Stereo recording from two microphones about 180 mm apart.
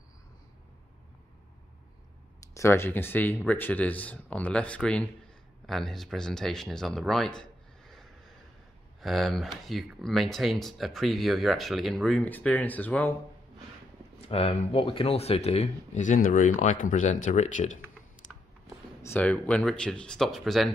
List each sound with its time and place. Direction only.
2.5 s speech: 15° left (ahead or behind)
14.3 s speech: 35° left (ahead or behind)
19.0 s speech: 10° left (ahead or behind)